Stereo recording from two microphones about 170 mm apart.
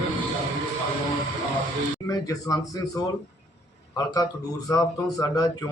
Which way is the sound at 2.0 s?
20° left (ahead or behind).